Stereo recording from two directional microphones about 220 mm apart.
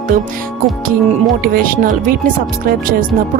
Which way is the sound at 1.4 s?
40° right (ahead or behind).